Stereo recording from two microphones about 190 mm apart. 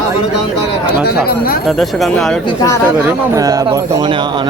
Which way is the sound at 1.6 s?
Centre (ahead or behind).